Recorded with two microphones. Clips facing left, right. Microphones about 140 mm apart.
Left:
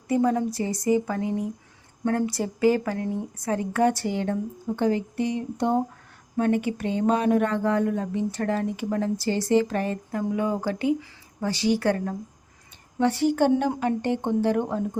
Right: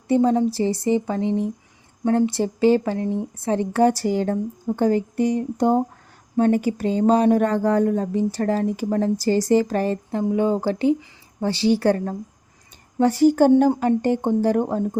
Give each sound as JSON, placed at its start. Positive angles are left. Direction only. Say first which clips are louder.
{"t": 0.1, "sound": "speech", "louder": "right 5 dB", "side_deg": -25}